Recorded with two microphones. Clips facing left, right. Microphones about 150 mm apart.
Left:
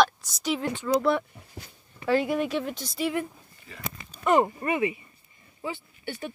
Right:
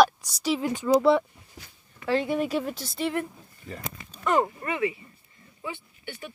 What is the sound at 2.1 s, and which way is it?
A woman's voice, centre (ahead or behind).